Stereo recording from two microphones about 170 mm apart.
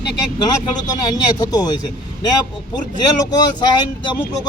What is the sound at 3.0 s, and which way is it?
Speech, 25° left (ahead or behind).